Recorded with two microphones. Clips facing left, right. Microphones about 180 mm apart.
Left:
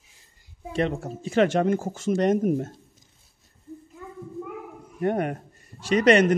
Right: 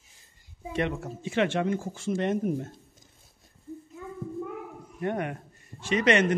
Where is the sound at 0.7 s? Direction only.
35° left (ahead or behind).